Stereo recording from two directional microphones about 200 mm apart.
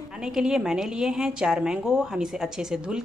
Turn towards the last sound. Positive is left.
turn(degrees=-5)  # may be behind; listen again after turning